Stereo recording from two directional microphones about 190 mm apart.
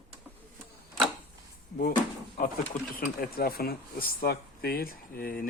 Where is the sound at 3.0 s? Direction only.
50° left (ahead or behind).